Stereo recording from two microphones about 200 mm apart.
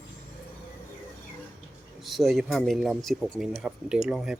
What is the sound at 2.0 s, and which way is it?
Speech, centre (ahead or behind).